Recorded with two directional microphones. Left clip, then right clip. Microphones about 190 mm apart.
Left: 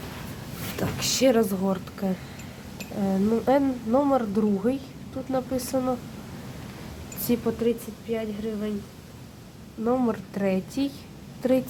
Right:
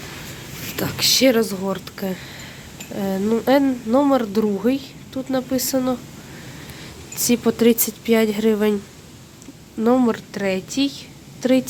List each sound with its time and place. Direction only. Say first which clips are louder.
0.8 s speech: right 7 dB; 10° right (ahead or behind)
7.3 s speech: right 5 dB; 15° right (ahead or behind)
7.6 s a woman's voice: right 9 dB; 45° right (ahead or behind)
9.8 s speech: right 7 dB; 20° right (ahead or behind)